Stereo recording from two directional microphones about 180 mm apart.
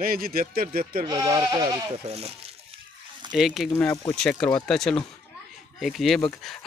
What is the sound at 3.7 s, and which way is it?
Speech, 15° left (ahead or behind).